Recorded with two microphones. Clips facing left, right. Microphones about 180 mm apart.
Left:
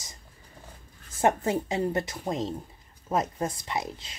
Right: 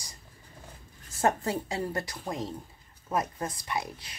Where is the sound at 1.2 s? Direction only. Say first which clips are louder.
Left 3 dB; 20° left (ahead or behind).